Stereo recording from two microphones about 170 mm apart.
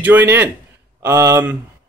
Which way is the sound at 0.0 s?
10° right (ahead or behind).